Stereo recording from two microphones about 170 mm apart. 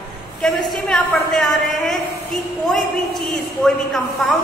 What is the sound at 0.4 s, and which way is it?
A woman's voice, 5° left (ahead or behind).